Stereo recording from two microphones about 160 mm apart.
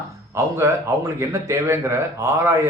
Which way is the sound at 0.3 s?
15° right (ahead or behind).